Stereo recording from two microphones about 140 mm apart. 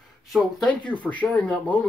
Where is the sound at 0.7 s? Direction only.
10° left (ahead or behind).